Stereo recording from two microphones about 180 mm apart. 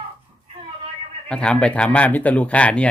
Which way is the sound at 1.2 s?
5° left (ahead or behind).